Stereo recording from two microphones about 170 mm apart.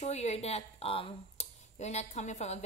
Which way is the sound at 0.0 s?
40° left (ahead or behind).